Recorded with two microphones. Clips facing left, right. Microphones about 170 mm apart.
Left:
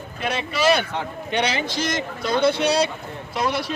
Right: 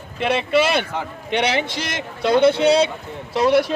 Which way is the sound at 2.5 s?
25° right (ahead or behind).